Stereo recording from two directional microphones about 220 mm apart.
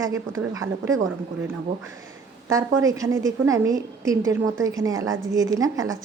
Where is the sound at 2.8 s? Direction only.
15° right (ahead or behind).